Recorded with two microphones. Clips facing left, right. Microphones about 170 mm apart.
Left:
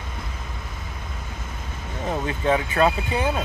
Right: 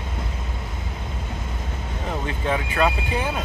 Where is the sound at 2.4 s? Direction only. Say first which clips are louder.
Left 3 dB; 30° left (ahead or behind).